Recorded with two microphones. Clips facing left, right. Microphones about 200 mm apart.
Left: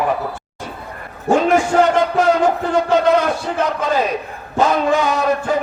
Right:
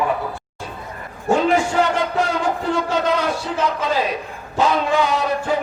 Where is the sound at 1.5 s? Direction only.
45° left (ahead or behind).